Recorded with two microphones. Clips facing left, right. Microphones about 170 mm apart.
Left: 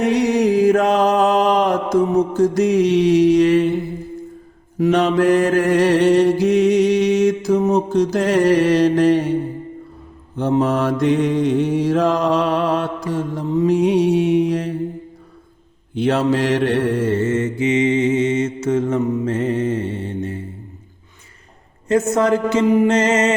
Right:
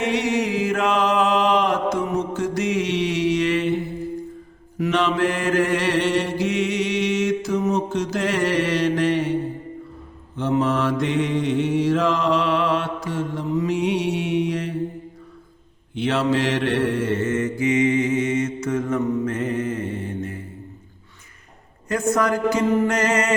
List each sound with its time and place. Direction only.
0.0 s mantra: 40° left (ahead or behind)
4.8 s mantra: 40° left (ahead or behind)
10.3 s mantra: 40° left (ahead or behind)
16.0 s mantra: 40° left (ahead or behind)
17.2 s mantra: 30° left (ahead or behind)
21.8 s a man's voice: 25° left (ahead or behind)